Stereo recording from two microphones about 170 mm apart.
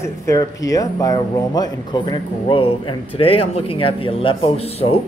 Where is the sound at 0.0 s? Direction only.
20° left (ahead or behind).